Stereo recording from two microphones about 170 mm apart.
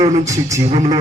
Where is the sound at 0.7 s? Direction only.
30° right (ahead or behind).